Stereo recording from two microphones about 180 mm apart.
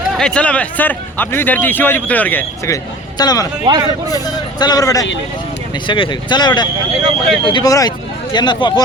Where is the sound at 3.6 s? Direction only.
20° right (ahead or behind).